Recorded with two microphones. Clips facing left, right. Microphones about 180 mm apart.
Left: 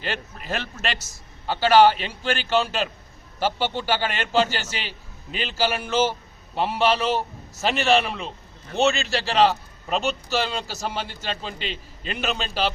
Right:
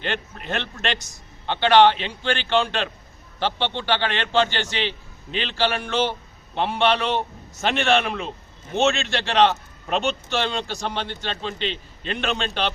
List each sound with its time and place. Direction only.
0.0 s a man's voice: 5° left (ahead or behind)